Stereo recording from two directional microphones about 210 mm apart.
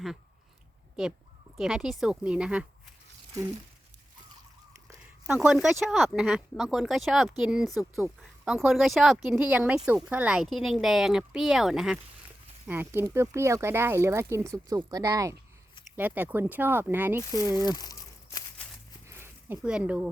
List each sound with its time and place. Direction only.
1.5 s speech: centre (ahead or behind)
5.2 s speech: 5° right (ahead or behind)
17.2 s speech: 15° left (ahead or behind)
19.0 s a sound: 10° right (ahead or behind)